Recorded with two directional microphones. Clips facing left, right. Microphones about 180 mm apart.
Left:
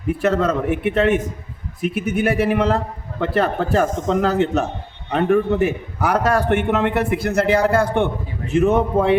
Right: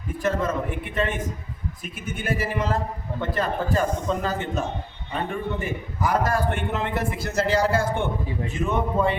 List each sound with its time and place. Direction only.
0.1 s a man's voice: 70° left (ahead or behind)
8.4 s a man's voice: 75° left (ahead or behind)